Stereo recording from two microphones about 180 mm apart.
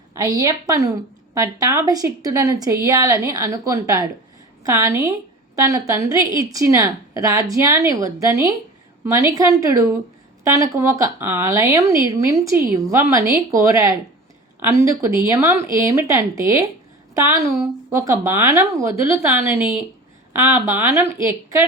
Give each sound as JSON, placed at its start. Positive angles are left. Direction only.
{"t": 0.1, "sound": "a woman's voice", "side_deg": -20}